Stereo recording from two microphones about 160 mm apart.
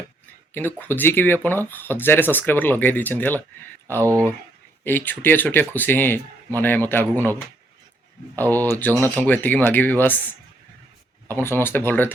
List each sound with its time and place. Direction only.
0.5 s speech: 15° left (ahead or behind)
4.0 s speech: 20° right (ahead or behind)
4.8 s speech: 10° left (ahead or behind)
8.4 s speech: 15° left (ahead or behind)
11.3 s speech: 15° left (ahead or behind)